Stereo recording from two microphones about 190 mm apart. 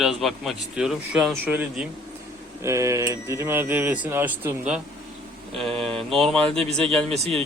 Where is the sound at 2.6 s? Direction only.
15° right (ahead or behind).